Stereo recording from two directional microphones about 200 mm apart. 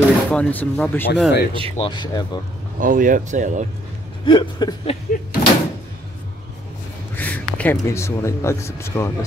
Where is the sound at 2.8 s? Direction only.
40° right (ahead or behind).